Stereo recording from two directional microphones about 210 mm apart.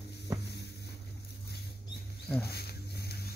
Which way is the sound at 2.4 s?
50° left (ahead or behind).